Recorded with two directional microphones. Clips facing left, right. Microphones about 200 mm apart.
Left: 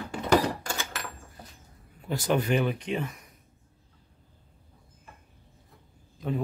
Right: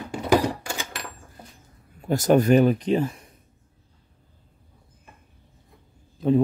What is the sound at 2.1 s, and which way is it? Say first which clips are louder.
Speech: right 8 dB; 45° right (ahead or behind).